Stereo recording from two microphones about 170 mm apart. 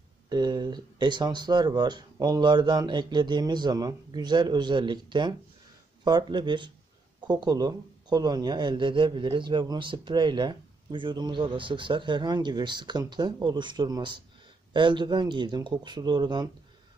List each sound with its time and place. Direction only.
0.3 s speech: 25° right (ahead or behind)